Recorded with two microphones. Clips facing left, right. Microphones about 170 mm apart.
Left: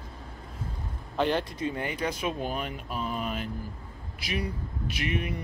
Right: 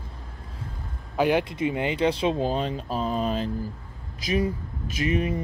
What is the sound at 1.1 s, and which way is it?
Speech, 10° right (ahead or behind).